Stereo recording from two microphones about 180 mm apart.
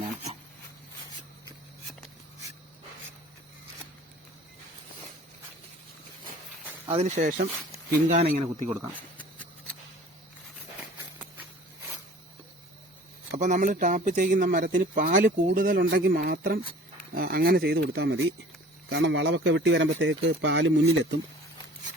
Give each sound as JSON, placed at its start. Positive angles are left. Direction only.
{"t": 6.8, "sound": "speech", "side_deg": -35}
{"t": 7.2, "sound": "speech", "side_deg": -45}
{"t": 7.9, "sound": "speech", "side_deg": -55}
{"t": 8.7, "sound": "speech", "side_deg": -10}
{"t": 13.3, "sound": "speech", "side_deg": -45}
{"t": 18.9, "sound": "speech", "side_deg": -90}